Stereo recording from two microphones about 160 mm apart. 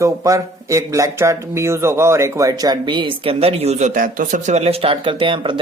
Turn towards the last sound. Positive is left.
turn(degrees=-30)  # may be behind; listen again after turning